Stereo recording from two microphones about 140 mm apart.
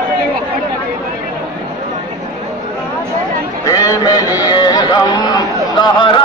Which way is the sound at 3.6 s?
25° left (ahead or behind).